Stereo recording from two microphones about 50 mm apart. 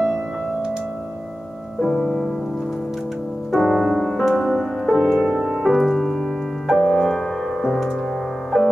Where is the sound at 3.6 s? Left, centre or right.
Centre.